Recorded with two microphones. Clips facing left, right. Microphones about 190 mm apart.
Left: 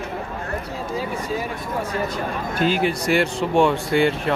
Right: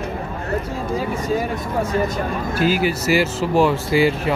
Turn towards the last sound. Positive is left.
turn(degrees=-5)  # may be behind; listen again after turning